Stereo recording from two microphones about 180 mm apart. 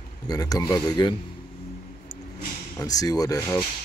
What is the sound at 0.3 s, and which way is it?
Speech, 20° left (ahead or behind).